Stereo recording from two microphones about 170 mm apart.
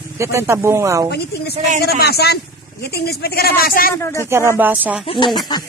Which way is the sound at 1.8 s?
70° left (ahead or behind).